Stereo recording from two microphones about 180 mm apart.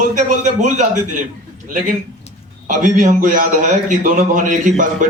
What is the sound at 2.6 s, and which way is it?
A man's voice, 45° right (ahead or behind).